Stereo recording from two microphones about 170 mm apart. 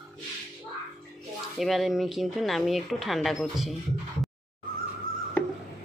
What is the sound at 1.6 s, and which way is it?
Speech, centre (ahead or behind).